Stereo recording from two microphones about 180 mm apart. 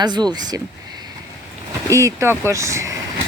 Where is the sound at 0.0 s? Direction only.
25° right (ahead or behind).